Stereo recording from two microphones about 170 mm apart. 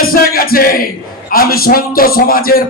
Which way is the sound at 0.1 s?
60° left (ahead or behind).